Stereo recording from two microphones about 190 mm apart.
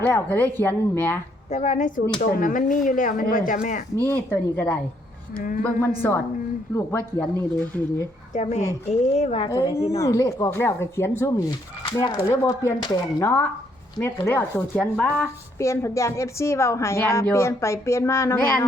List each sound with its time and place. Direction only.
0.0 s speech: 10° left (ahead or behind)
1.5 s speech: 35° left (ahead or behind)
4.0 s speech: 10° left (ahead or behind)
6.0 s speech: 15° left (ahead or behind)
8.3 s speech: 35° left (ahead or behind)
10.0 s speech: 15° left (ahead or behind)
11.9 s speech: 25° left (ahead or behind)